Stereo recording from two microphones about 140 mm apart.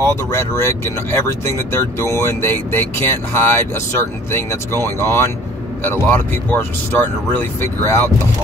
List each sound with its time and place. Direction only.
0.0 s speech: 20° left (ahead or behind)